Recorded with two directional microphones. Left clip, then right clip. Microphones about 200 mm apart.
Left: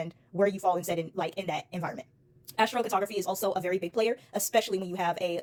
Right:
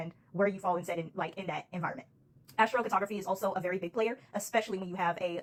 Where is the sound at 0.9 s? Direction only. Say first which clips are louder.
Left 4 dB; 45° left (ahead or behind).